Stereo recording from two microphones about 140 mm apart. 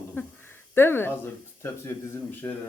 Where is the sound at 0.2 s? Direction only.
15° left (ahead or behind).